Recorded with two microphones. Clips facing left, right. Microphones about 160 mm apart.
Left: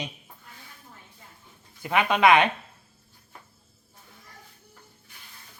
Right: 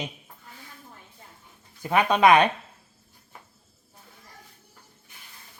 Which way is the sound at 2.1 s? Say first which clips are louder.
Right 1 dB; 40° right (ahead or behind).